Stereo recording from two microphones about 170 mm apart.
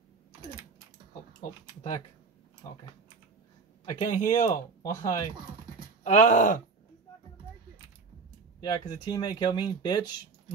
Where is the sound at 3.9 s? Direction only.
40° left (ahead or behind).